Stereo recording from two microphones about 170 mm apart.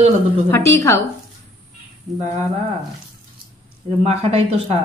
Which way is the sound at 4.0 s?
35° right (ahead or behind).